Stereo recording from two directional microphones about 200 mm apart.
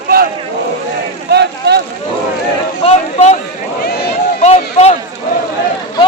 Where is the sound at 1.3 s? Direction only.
55° right (ahead or behind).